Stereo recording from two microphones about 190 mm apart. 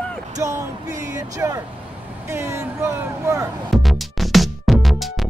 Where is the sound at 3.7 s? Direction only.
Centre (ahead or behind).